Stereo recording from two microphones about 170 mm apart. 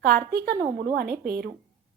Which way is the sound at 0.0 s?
70° right (ahead or behind).